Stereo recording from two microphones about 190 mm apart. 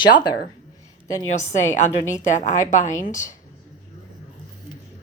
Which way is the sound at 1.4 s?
40° left (ahead or behind).